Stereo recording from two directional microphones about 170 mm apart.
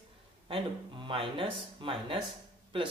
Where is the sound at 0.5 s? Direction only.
30° right (ahead or behind).